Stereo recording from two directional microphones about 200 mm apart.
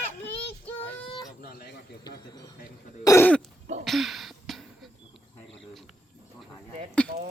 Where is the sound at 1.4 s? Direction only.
50° left (ahead or behind).